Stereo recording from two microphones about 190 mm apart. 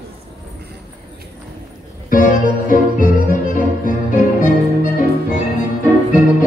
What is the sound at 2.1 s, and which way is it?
Music, 45° left (ahead or behind).